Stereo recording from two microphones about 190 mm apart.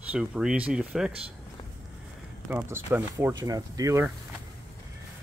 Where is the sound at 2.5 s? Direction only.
10° right (ahead or behind).